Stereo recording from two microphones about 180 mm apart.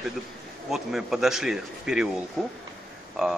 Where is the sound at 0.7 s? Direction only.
Centre (ahead or behind).